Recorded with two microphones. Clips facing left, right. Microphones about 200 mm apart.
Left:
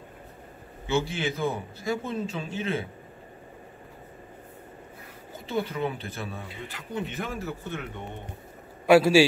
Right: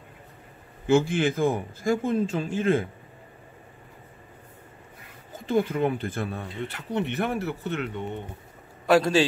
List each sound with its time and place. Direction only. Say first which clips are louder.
0.8 s a man's voice: right 6 dB; 50° right (ahead or behind)
5.5 s a man's voice: right 5 dB; 50° right (ahead or behind)
6.9 s speech: right 6 dB; 65° right (ahead or behind)
8.8 s a man's voice: left 3 dB; 5° left (ahead or behind)